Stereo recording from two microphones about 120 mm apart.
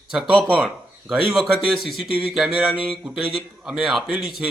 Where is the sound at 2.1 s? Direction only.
10° right (ahead or behind).